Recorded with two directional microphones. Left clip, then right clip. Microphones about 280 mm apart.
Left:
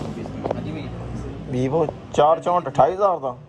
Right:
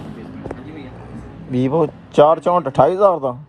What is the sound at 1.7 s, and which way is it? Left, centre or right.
Speech, right.